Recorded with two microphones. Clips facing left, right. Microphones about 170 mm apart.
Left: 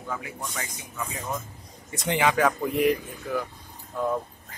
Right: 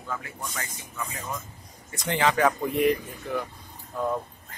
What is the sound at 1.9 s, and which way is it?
Speech, 25° left (ahead or behind).